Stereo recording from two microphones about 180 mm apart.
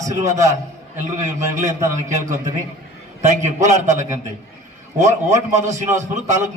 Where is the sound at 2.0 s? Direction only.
45° right (ahead or behind).